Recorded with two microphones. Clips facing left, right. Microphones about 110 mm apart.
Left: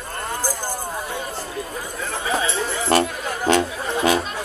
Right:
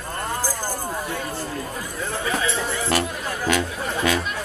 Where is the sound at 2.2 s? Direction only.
25° left (ahead or behind).